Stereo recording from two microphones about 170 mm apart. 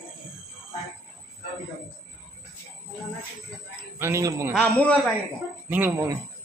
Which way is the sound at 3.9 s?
15° right (ahead or behind).